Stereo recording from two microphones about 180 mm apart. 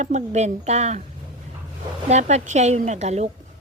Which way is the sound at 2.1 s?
40° right (ahead or behind).